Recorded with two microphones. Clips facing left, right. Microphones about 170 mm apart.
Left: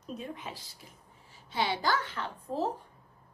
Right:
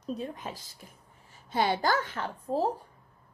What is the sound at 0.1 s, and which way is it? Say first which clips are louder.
A woman's voice: right 4 dB; 40° right (ahead or behind).